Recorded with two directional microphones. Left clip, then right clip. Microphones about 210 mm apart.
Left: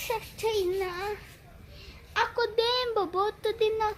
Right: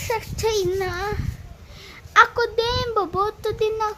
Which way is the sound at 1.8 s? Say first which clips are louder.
Right 13 dB; 15° right (ahead or behind).